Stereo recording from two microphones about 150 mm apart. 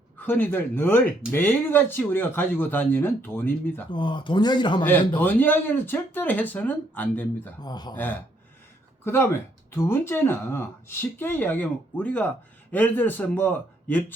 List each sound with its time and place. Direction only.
0.2 s speech: 15° left (ahead or behind)
3.8 s speech: 30° left (ahead or behind)
5.2 s speech: 10° left (ahead or behind)
7.6 s speech: 25° left (ahead or behind)
9.7 s speech: 15° left (ahead or behind)